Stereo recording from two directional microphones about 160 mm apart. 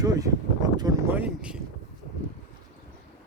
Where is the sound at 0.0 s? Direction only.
20° right (ahead or behind).